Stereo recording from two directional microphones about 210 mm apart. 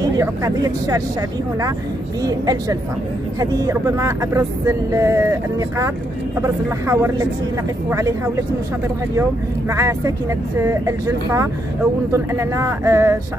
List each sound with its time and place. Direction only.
0.0 s speech: 15° right (ahead or behind)
2.2 s speech: 15° right (ahead or behind)
9.7 s speech: 15° right (ahead or behind)